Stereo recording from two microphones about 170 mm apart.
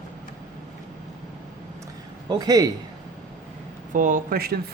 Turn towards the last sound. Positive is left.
turn(degrees=-65)  # may be behind; listen again after turning